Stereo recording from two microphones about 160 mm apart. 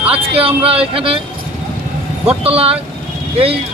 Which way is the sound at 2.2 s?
40° right (ahead or behind).